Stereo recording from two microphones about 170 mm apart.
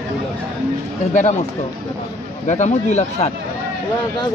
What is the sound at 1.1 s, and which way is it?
Speech, 45° left (ahead or behind).